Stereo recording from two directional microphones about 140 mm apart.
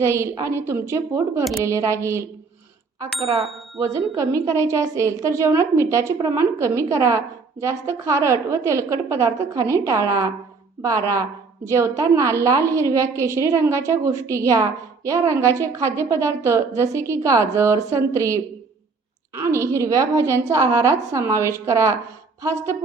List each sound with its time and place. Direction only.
0.0 s a woman's voice: 20° right (ahead or behind)
3.9 s a woman's voice: 20° right (ahead or behind)